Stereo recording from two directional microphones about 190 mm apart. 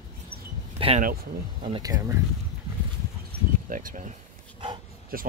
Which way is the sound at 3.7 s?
45° right (ahead or behind).